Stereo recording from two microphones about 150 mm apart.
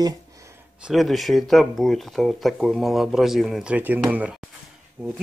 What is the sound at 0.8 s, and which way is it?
Speech, centre (ahead or behind).